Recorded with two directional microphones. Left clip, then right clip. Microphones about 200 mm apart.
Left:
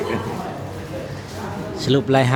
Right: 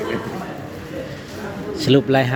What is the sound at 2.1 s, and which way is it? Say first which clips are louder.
Speech: even; 5° left (ahead or behind).